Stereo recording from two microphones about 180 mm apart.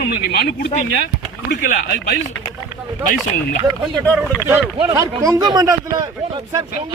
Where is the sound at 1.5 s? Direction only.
45° left (ahead or behind).